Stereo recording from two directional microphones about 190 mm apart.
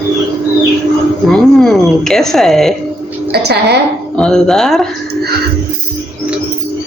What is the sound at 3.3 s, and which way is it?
Speech, 60° right (ahead or behind).